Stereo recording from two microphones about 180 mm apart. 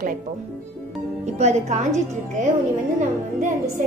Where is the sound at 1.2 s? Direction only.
40° right (ahead or behind).